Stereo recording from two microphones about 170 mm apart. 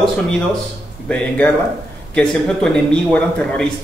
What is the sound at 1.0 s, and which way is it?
Speech, 5° left (ahead or behind).